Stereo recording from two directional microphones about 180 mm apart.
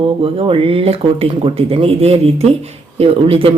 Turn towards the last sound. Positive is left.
turn(degrees=-30)  # may be behind; listen again after turning